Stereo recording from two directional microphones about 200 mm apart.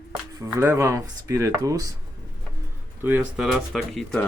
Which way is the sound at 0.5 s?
15° right (ahead or behind).